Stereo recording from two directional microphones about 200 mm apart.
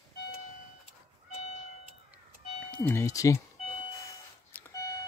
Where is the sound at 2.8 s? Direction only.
15° left (ahead or behind).